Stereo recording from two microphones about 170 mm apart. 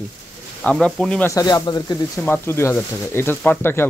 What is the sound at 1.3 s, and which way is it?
Speech, 25° left (ahead or behind).